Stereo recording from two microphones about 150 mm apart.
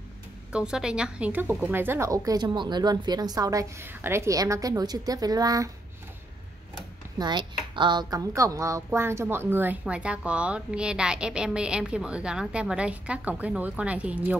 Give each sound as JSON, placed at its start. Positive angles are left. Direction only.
{"t": 0.5, "sound": "a woman's voice", "side_deg": -5}
{"t": 7.2, "sound": "speech", "side_deg": -30}